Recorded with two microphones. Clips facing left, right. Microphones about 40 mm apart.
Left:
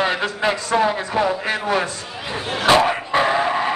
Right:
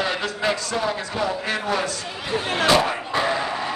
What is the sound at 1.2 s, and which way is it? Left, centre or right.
Speech, left.